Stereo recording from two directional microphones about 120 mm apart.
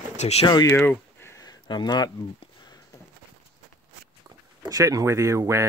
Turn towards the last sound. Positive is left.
turn(degrees=-25)  # may be behind; listen again after turning